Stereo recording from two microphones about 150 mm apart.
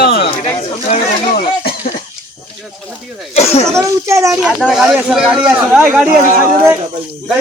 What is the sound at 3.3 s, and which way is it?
Speech, 45° left (ahead or behind).